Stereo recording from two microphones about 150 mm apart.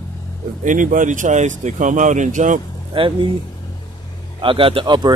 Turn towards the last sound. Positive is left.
turn(degrees=-30)  # may be behind; listen again after turning